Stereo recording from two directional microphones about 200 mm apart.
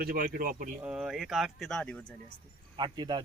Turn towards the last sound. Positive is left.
turn(degrees=-20)  # may be behind; listen again after turning